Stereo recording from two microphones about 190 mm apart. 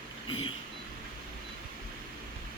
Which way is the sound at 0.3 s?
25° left (ahead or behind).